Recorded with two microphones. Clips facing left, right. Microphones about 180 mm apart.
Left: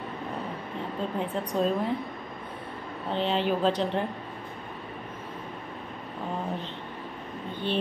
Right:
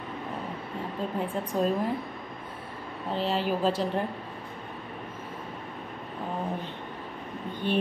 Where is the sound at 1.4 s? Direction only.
5° right (ahead or behind).